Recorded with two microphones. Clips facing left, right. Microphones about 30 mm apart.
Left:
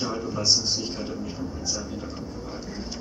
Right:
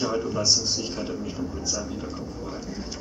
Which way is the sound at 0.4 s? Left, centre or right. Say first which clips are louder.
Left 3 dB; centre.